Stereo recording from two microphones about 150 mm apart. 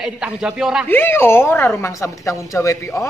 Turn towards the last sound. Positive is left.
turn(degrees=20)  # may be behind; listen again after turning